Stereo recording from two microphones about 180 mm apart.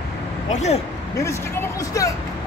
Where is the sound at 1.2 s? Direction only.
15° left (ahead or behind).